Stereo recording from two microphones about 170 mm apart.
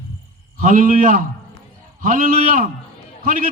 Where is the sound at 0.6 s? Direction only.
50° right (ahead or behind).